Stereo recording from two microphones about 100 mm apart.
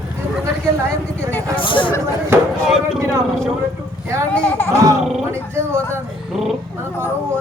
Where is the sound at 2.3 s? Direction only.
25° right (ahead or behind).